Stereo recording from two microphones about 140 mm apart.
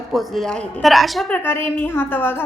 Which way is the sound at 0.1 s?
Centre (ahead or behind).